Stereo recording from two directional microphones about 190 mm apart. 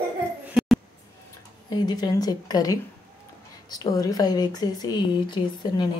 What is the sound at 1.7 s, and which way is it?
Speech, 20° left (ahead or behind).